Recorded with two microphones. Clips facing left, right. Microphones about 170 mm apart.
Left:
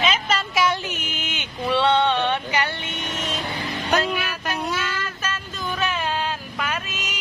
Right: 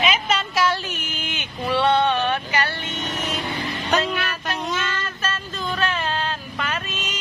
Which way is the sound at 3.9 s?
10° left (ahead or behind).